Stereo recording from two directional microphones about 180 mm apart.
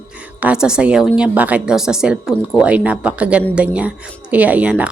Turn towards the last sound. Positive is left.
turn(degrees=-5)  # may be behind; listen again after turning